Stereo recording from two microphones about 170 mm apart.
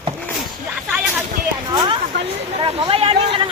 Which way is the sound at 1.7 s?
25° right (ahead or behind).